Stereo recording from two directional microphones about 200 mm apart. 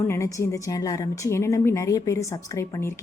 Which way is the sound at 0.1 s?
15° left (ahead or behind).